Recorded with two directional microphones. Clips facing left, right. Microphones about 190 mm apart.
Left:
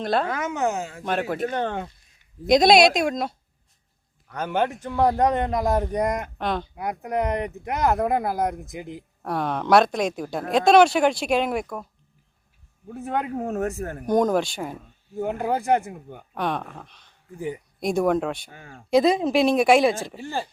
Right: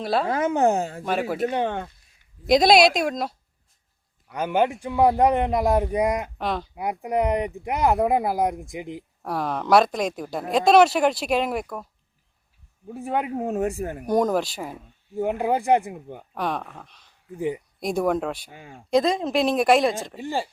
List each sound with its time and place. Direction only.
0.0 s speech: 5° right (ahead or behind)
0.3 s speech: 30° right (ahead or behind)
1.0 s a man's voice: 5° right (ahead or behind)
2.5 s speech: centre (ahead or behind)
4.3 s a man's voice: 10° right (ahead or behind)
12.9 s a man's voice: 10° right (ahead or behind)
14.1 s speech: centre (ahead or behind)
15.2 s a man's voice: 10° right (ahead or behind)
18.5 s a man's voice: 15° right (ahead or behind)
18.9 s speech: 5° left (ahead or behind)
20.1 s a man's voice: 15° right (ahead or behind)